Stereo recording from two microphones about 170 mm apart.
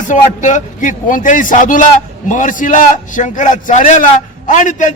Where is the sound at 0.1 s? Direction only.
50° left (ahead or behind).